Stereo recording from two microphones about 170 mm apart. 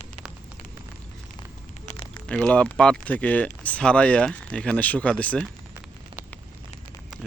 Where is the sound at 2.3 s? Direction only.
5° left (ahead or behind).